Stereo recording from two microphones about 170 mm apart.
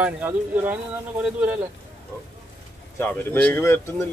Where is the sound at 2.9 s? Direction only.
10° left (ahead or behind).